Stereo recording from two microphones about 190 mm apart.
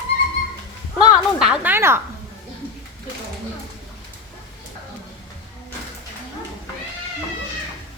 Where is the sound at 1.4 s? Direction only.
5° right (ahead or behind).